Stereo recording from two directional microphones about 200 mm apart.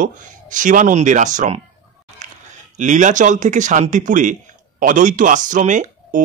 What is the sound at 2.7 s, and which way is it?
Speech, 35° right (ahead or behind).